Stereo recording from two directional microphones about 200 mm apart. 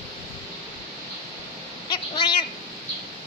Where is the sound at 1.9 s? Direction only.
25° left (ahead or behind).